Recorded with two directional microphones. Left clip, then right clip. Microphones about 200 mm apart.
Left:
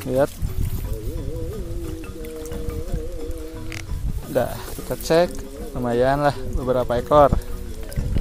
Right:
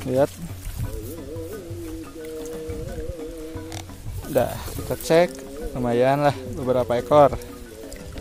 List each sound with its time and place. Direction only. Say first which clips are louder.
0.0 s speech: left 1 dB; centre (ahead or behind)
4.3 s speech: right 1 dB; 10° right (ahead or behind)